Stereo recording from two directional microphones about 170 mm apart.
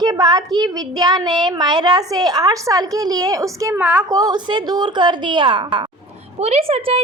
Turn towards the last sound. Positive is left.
turn(degrees=-35)  # may be behind; listen again after turning